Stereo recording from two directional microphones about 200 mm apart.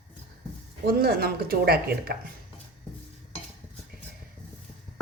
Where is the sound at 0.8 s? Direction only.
50° right (ahead or behind).